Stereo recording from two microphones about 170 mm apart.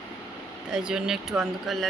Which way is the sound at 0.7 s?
5° right (ahead or behind).